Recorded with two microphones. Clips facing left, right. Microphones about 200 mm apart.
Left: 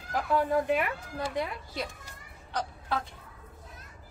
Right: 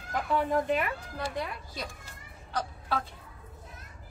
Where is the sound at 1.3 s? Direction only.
20° left (ahead or behind).